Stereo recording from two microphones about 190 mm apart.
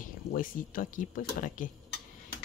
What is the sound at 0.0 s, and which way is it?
Speech, 45° left (ahead or behind).